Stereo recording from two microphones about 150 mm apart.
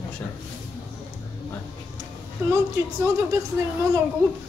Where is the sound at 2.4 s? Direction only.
20° right (ahead or behind).